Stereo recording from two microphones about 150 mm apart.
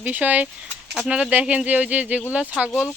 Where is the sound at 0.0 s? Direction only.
10° right (ahead or behind).